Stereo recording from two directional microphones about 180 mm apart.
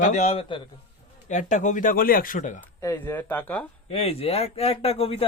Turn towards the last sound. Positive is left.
turn(degrees=35)  # may be behind; listen again after turning